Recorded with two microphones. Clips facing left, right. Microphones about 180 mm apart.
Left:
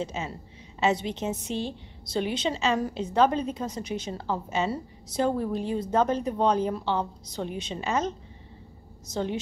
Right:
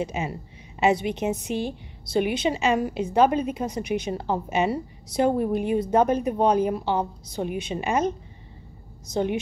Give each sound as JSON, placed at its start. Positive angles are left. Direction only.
{"t": 0.0, "sound": "a woman's voice", "side_deg": -15}